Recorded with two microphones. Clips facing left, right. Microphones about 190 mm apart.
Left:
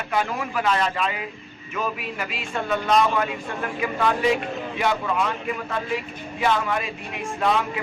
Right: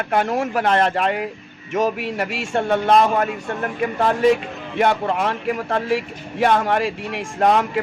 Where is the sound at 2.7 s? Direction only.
55° right (ahead or behind).